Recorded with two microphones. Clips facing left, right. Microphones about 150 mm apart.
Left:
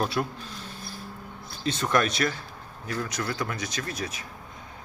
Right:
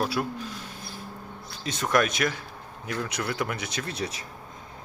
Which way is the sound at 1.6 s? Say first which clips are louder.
Even; 10° right (ahead or behind).